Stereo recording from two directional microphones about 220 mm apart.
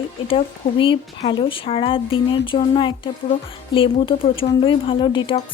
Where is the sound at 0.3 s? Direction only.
25° left (ahead or behind).